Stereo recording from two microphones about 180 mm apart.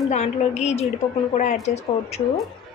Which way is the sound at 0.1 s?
40° left (ahead or behind).